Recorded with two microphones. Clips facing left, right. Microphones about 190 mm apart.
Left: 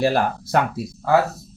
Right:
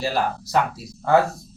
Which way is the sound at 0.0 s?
55° left (ahead or behind).